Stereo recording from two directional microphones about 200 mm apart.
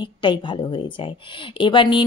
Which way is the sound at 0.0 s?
25° left (ahead or behind).